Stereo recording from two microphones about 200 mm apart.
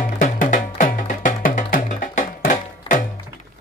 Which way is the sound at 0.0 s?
45° left (ahead or behind).